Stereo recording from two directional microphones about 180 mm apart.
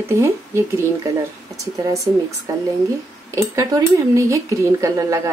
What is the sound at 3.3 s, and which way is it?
Speech, 15° right (ahead or behind).